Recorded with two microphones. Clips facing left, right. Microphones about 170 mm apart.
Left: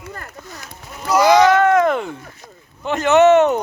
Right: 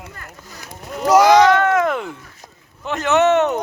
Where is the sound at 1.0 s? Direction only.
85° right.